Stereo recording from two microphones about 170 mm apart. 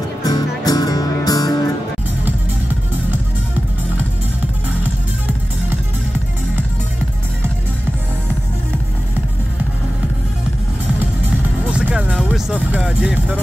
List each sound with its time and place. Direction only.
0.2 s music: 20° left (ahead or behind)
11.6 s music: 10° right (ahead or behind)